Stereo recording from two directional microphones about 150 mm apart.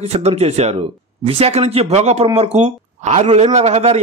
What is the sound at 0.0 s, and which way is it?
Speech, 45° right (ahead or behind).